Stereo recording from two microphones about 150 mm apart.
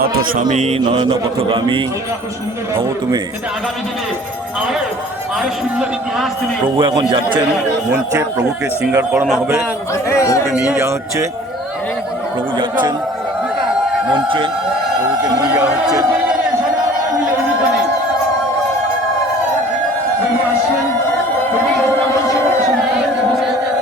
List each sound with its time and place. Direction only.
0.0 s a man's voice: 70° right (ahead or behind); by 0.8 s 50° right (ahead or behind)
0.9 s a man's voice: 30° right (ahead or behind)
5.4 s a man's voice: centre (ahead or behind)
6.7 s a man's voice: 30° right (ahead or behind)
7.9 s speech: 15° right (ahead or behind)
9.9 s speech: 20° left (ahead or behind)
10.5 s speech: 5° right (ahead or behind)
10.8 s a man's voice: 20° right (ahead or behind)
12.5 s a man's voice: 30° right (ahead or behind)
14.1 s a man's voice: 30° right (ahead or behind)